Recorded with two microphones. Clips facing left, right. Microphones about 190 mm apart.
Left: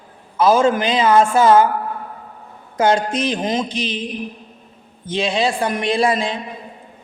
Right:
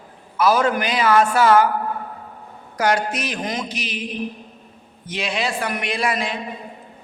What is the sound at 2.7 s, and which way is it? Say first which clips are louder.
A woman's voice: left 4 dB; 25° left (ahead or behind).